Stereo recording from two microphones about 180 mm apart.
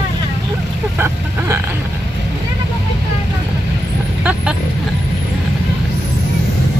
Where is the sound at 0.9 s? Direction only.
10° right (ahead or behind).